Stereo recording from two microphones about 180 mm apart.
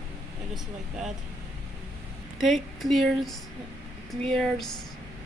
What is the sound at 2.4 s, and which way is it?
Speech, centre (ahead or behind).